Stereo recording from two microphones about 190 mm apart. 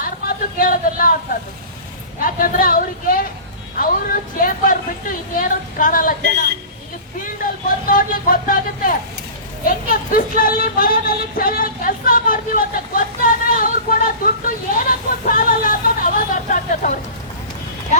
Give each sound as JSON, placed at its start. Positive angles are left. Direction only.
{"t": 0.0, "sound": "a sound", "side_deg": 50}
{"t": 2.2, "sound": "speech", "side_deg": 45}
{"t": 4.4, "sound": "speech", "side_deg": 45}
{"t": 7.9, "sound": "speech", "side_deg": 45}